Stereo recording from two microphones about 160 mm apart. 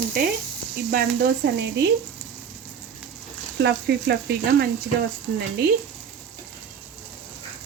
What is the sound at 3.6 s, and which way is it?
Speech, 90° right.